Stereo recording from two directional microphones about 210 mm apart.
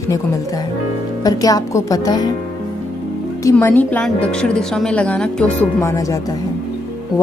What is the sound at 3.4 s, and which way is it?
A woman's voice, 10° left (ahead or behind).